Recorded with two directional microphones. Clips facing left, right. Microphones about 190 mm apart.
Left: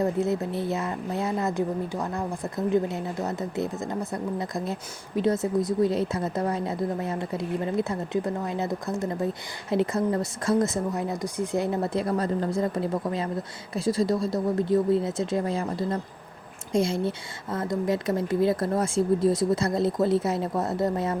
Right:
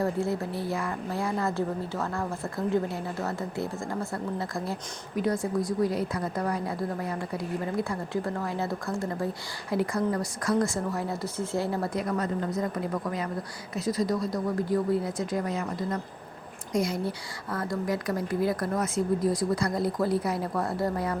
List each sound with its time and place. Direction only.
0.0 s speech: 20° left (ahead or behind)